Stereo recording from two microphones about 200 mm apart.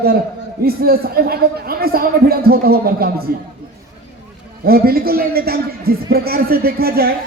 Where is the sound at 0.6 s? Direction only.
50° right (ahead or behind).